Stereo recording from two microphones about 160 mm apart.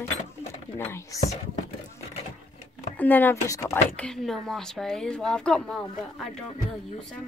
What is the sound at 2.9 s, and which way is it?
Speech, 10° left (ahead or behind).